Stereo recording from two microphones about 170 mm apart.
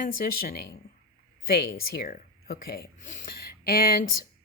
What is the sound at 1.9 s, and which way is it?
Speech, 55° left (ahead or behind).